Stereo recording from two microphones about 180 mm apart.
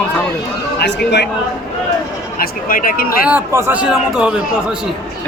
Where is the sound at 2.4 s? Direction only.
50° left (ahead or behind).